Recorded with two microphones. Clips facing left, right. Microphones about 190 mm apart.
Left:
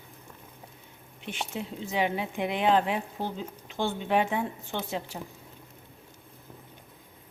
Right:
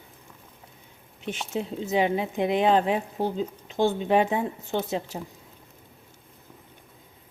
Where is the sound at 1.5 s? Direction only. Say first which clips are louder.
Right 9 dB; 40° right (ahead or behind).